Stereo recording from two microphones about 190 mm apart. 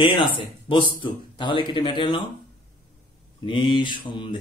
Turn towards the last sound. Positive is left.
turn(degrees=25)  # may be behind; listen again after turning